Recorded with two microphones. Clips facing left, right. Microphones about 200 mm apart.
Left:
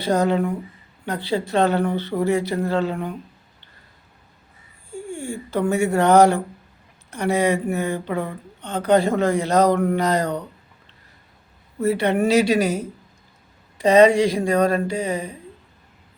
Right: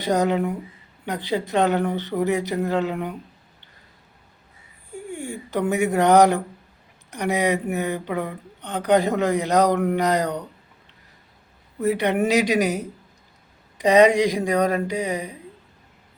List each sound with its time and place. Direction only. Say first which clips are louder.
0.0 s speech: left 1 dB; 15° right (ahead or behind)
4.9 s speech: left 2 dB; 20° right (ahead or behind)
11.8 s speech: left 1 dB; 15° right (ahead or behind)